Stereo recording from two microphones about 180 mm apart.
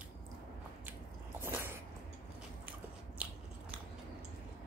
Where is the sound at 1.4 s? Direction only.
15° right (ahead or behind).